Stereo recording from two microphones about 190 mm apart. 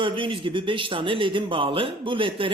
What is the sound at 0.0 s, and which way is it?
Speech, 25° right (ahead or behind).